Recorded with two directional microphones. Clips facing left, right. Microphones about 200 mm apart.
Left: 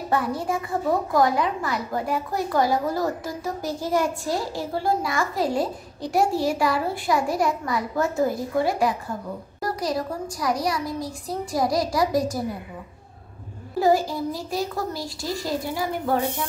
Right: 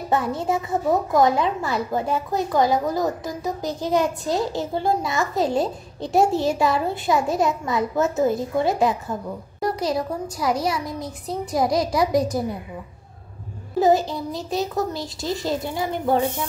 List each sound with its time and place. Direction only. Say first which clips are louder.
0.1 s a woman's voice: right 2 dB; 25° right (ahead or behind)
13.7 s a woman's voice: right 2 dB; 20° right (ahead or behind)